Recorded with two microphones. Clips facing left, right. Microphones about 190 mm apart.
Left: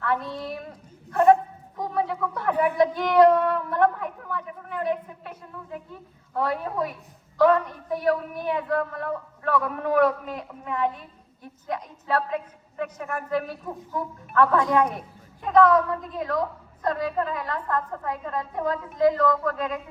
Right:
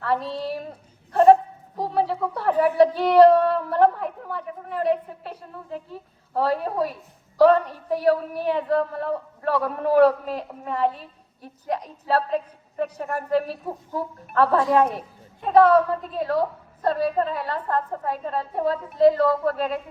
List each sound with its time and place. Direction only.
0.0 s a woman's voice: 35° right (ahead or behind)